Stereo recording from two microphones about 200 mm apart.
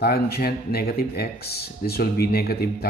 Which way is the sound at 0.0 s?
50° left (ahead or behind).